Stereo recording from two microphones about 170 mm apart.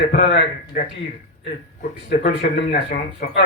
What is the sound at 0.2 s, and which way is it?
A man's voice, 60° left (ahead or behind).